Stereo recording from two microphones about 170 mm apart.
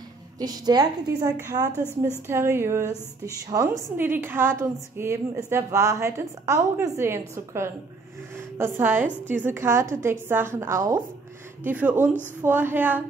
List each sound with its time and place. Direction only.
0.4 s a woman's voice: 25° right (ahead or behind)